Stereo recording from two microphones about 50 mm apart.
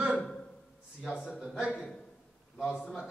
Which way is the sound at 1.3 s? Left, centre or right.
Centre.